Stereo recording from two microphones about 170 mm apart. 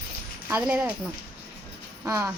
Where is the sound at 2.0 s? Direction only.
15° right (ahead or behind).